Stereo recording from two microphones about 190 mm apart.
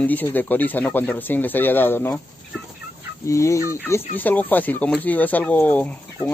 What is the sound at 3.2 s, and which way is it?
Speech, 15° left (ahead or behind).